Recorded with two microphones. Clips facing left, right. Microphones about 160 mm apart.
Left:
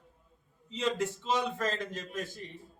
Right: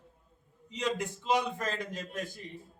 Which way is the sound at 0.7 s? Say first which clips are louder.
Left 2 dB; 15° right (ahead or behind).